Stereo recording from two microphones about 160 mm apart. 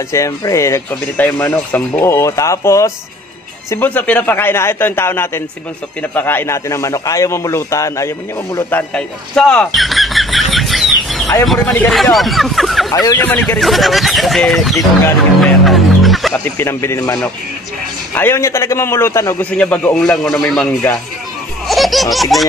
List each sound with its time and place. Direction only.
0.1 s a man's voice: 20° left (ahead or behind)
8.6 s a sound: 10° left (ahead or behind)
11.4 s a man's voice: centre (ahead or behind)
12.9 s a man's voice: 25° left (ahead or behind)
13.2 s a man's voice: 10° left (ahead or behind)
15.4 s music: centre (ahead or behind)
16.4 s a man's voice: 15° left (ahead or behind)
21.6 s baby laughter: centre (ahead or behind)